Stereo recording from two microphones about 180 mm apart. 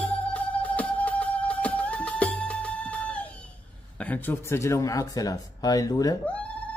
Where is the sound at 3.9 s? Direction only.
10° left (ahead or behind).